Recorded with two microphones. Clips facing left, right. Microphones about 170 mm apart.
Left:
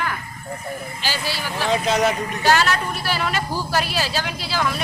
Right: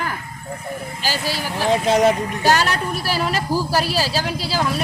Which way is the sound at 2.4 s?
40° right (ahead or behind).